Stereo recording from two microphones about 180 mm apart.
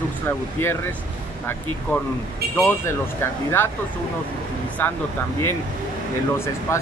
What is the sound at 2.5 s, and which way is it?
Speech, 15° left (ahead or behind).